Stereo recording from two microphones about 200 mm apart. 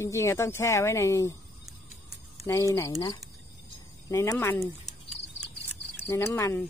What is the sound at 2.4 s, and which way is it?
Speech, 15° left (ahead or behind).